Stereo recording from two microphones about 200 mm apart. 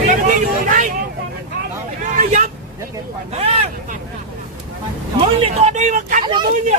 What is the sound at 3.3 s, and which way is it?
Speech, 30° right (ahead or behind).